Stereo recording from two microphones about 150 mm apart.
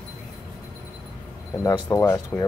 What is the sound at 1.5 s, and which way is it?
Speech, 20° left (ahead or behind).